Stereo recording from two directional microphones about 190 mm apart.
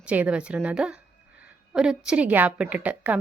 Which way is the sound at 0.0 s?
5° right (ahead or behind).